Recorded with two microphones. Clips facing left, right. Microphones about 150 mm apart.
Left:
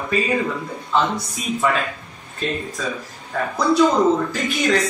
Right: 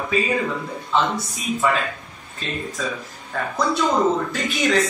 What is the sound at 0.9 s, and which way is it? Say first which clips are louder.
Speech: left 1 dB; centre (ahead or behind).